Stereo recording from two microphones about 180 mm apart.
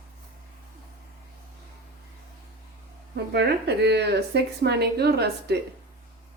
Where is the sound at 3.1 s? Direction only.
65° right (ahead or behind).